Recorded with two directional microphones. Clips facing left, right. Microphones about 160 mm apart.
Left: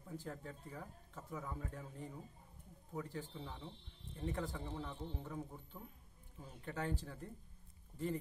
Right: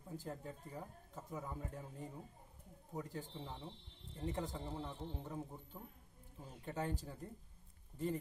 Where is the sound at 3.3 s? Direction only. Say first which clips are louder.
Even; 20° right (ahead or behind).